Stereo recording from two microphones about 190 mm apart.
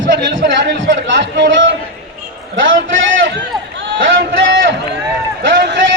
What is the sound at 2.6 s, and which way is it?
Speech, 85° right.